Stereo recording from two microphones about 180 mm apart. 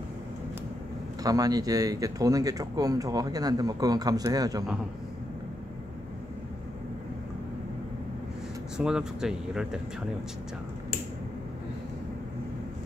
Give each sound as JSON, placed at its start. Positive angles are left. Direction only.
{"t": 1.2, "sound": "speech", "side_deg": -20}
{"t": 8.7, "sound": "speech", "side_deg": -5}